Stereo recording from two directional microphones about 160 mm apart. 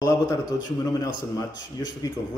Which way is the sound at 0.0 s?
25° left (ahead or behind).